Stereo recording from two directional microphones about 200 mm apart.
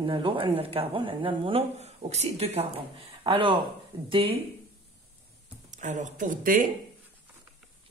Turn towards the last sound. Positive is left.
turn(degrees=-45)  # may be behind; listen again after turning